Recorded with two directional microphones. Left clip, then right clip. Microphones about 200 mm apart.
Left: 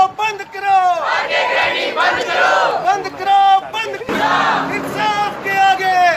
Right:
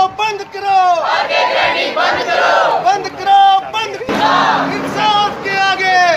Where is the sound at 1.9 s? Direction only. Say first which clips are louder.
Right 2 dB; 15° left (ahead or behind).